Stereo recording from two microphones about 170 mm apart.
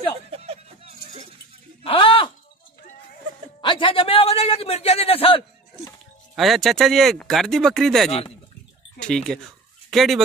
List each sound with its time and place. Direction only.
0.3 s a sound: 35° right (ahead or behind)
1.9 s groan: 30° left (ahead or behind)
3.6 s a man's voice: 30° left (ahead or behind)
6.3 s speech: centre (ahead or behind)